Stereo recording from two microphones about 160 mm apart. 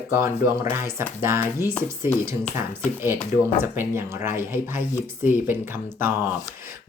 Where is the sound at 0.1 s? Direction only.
15° right (ahead or behind).